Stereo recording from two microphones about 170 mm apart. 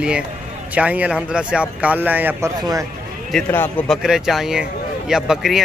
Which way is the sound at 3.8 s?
5° right (ahead or behind).